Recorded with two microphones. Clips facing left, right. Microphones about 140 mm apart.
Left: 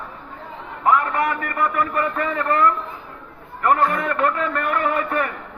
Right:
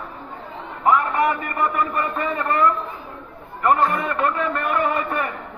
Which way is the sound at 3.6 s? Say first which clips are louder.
Even; 10° right (ahead or behind).